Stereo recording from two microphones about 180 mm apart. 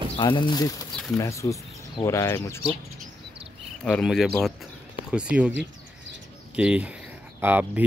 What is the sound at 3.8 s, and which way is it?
Speech, 5° left (ahead or behind).